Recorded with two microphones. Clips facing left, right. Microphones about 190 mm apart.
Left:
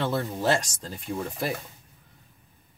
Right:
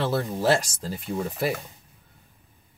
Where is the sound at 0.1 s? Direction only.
5° right (ahead or behind).